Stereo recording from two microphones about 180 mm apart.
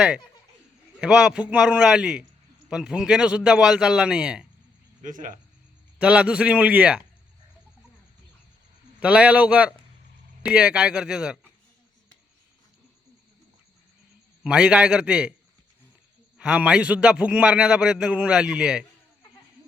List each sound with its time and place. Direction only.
1.0 s a man's voice: 5° right (ahead or behind)
5.0 s speech: 45° right (ahead or behind)
6.0 s a man's voice: 5° right (ahead or behind)
9.0 s a man's voice: 5° right (ahead or behind)
14.4 s a man's voice: 5° right (ahead or behind)
16.4 s a man's voice: 5° right (ahead or behind)